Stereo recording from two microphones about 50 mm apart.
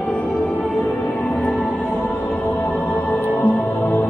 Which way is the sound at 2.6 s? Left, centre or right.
Left.